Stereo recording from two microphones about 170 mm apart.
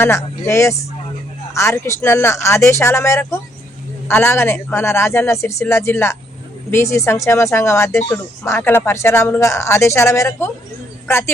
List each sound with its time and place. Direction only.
0.0 s speech: 15° left (ahead or behind)